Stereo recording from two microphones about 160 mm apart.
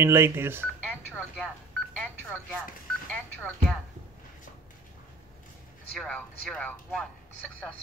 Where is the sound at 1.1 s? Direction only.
10° left (ahead or behind).